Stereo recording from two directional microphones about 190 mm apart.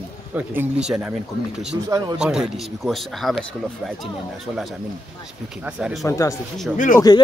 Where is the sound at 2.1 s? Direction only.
5° right (ahead or behind).